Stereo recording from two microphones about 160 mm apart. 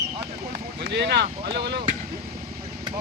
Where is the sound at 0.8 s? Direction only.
90° right.